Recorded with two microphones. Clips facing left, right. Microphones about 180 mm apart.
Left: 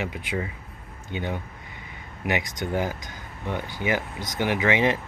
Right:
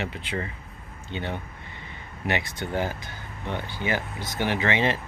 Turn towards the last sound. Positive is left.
turn(degrees=15)  # may be behind; listen again after turning